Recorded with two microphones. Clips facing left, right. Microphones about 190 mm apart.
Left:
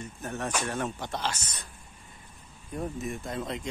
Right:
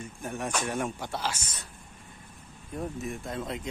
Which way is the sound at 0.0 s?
10° right (ahead or behind).